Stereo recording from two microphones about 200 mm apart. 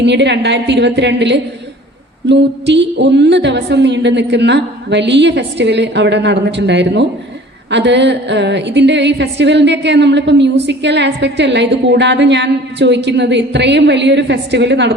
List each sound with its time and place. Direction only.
0.0 s a woman's voice: 60° right (ahead or behind)